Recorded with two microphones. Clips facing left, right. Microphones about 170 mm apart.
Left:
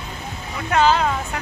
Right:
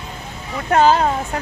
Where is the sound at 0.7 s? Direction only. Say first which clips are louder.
Right 3 dB; 40° right (ahead or behind).